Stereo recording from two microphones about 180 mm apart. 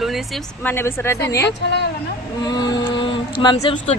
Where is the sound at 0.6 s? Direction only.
10° left (ahead or behind).